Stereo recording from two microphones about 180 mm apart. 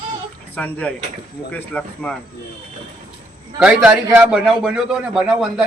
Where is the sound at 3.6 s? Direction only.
5° right (ahead or behind).